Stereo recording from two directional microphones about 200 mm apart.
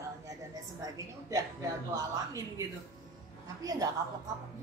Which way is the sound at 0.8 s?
15° right (ahead or behind).